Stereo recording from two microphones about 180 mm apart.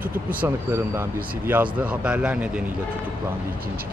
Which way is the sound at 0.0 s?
55° right (ahead or behind).